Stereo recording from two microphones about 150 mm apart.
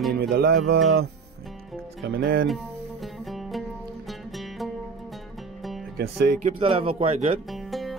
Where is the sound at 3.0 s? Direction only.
Centre (ahead or behind).